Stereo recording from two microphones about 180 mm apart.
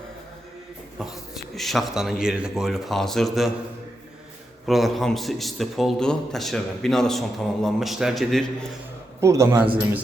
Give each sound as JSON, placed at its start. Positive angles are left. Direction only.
{"t": 0.9, "sound": "a man's voice", "side_deg": 0}
{"t": 4.6, "sound": "a man's voice", "side_deg": 0}
{"t": 9.2, "sound": "a man's voice", "side_deg": -15}